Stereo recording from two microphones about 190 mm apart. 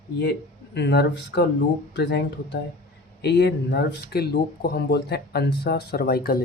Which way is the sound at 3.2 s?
60° left (ahead or behind).